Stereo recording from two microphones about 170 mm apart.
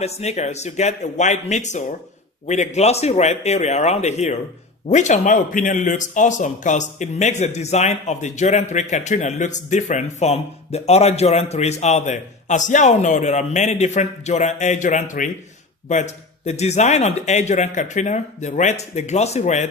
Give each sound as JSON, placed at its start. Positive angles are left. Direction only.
{"t": 0.0, "sound": "speech", "side_deg": 40}